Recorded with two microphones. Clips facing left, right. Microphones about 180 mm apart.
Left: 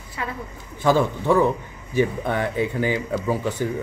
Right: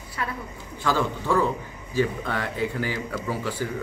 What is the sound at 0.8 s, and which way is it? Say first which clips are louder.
A man's voice: left 6 dB; 20° left (ahead or behind).